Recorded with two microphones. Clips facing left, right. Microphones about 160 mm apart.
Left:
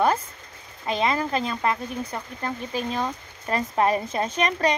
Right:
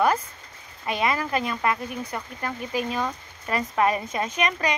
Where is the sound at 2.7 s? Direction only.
10° right (ahead or behind).